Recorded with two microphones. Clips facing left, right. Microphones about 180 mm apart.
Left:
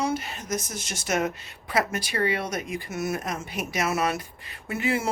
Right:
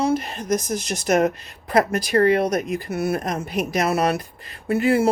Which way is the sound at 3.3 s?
35° right (ahead or behind).